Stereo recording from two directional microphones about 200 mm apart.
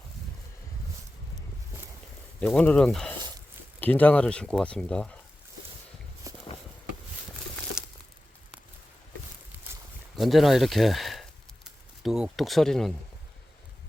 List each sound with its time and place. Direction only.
2.4 s speech: 5° left (ahead or behind)
6.3 s horse: 15° right (ahead or behind)
10.2 s a sound: centre (ahead or behind)